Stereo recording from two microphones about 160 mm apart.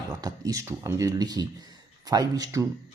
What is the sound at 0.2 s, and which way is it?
Speech, 25° right (ahead or behind).